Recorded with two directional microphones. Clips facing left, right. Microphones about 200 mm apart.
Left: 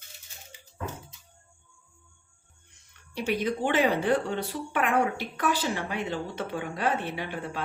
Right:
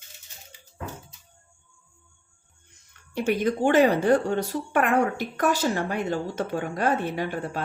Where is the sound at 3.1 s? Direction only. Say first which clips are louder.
Right 4 dB; 50° right (ahead or behind).